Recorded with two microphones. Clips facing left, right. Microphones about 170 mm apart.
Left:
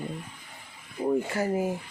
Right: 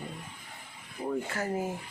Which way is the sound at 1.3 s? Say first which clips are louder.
Left 5 dB; 10° left (ahead or behind).